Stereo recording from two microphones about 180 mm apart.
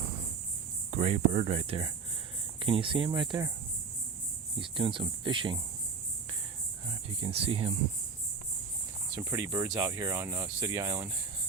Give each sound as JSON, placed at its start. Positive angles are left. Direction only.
{"t": 0.9, "sound": "speech", "side_deg": -40}
{"t": 4.5, "sound": "speech", "side_deg": -30}
{"t": 7.2, "sound": "speech", "side_deg": -30}
{"t": 9.1, "sound": "speech", "side_deg": -15}